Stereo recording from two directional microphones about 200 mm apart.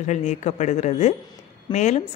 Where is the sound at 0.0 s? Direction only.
35° left (ahead or behind).